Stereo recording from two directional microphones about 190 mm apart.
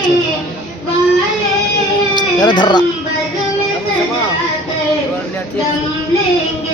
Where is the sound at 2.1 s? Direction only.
25° left (ahead or behind).